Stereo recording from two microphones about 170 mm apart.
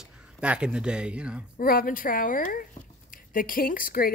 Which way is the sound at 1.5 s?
55° left (ahead or behind).